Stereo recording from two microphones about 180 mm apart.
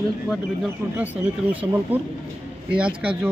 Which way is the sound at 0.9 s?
10° right (ahead or behind).